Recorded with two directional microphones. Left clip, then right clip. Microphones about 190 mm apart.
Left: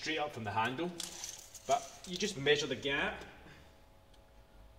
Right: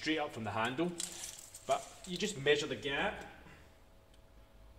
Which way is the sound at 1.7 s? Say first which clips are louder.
Left 2 dB; 30° right (ahead or behind).